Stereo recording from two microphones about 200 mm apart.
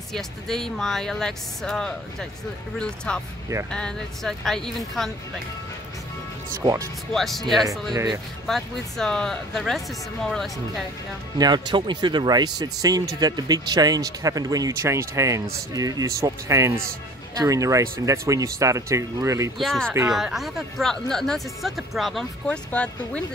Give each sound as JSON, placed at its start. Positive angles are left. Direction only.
{"t": 0.1, "sound": "speech", "side_deg": 0}
{"t": 6.6, "sound": "speech", "side_deg": -15}
{"t": 7.1, "sound": "speech", "side_deg": 0}
{"t": 7.9, "sound": "speech", "side_deg": -15}
{"t": 8.5, "sound": "speech", "side_deg": 0}
{"t": 11.3, "sound": "speech", "side_deg": -20}
{"t": 19.6, "sound": "speech", "side_deg": 0}